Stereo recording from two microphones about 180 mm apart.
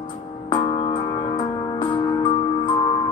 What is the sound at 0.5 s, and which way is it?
Music, 30° left (ahead or behind).